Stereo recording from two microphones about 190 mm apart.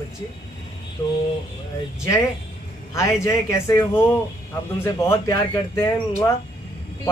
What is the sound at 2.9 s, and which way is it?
Speech, 15° left (ahead or behind).